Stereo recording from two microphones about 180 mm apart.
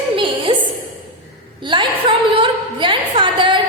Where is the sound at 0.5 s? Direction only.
35° right (ahead or behind).